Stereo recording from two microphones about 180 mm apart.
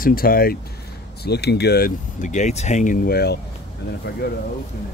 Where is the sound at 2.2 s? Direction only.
40° left (ahead or behind); by 3.4 s 60° left (ahead or behind).